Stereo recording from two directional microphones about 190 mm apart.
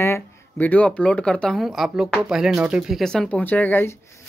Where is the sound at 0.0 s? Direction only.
10° left (ahead or behind).